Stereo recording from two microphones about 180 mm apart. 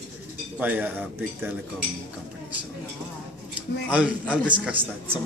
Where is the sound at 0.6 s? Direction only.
10° right (ahead or behind).